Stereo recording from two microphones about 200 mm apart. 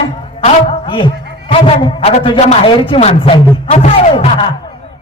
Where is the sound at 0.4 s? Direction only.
30° left (ahead or behind).